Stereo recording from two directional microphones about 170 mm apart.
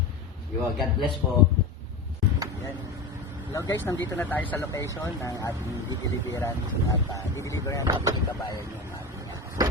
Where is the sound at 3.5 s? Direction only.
15° left (ahead or behind).